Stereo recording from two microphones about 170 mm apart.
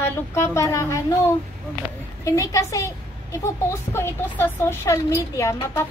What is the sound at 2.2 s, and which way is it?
A woman's voice, 20° left (ahead or behind).